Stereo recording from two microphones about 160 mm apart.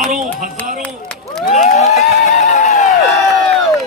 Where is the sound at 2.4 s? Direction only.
45° left (ahead or behind).